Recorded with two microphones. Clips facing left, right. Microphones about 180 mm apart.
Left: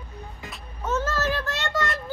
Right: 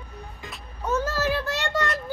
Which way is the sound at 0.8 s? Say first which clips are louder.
Right 1 dB; 15° right (ahead or behind).